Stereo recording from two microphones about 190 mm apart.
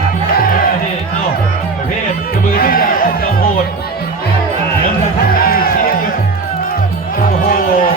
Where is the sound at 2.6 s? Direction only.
50° left (ahead or behind).